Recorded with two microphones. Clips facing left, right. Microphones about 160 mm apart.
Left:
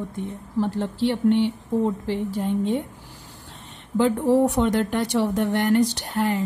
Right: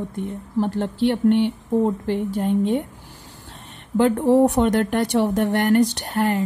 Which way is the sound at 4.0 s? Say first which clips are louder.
Right 3 dB; 55° right (ahead or behind).